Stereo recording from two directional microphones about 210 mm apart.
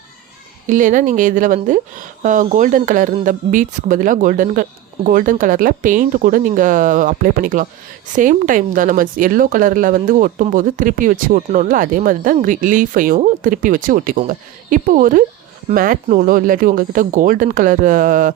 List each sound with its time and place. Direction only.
0.7 s a woman's voice: 40° right (ahead or behind)